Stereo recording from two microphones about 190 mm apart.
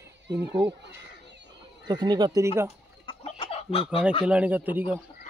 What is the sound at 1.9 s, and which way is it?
Speech, 20° right (ahead or behind).